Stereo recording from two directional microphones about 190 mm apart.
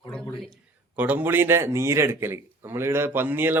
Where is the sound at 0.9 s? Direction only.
10° right (ahead or behind).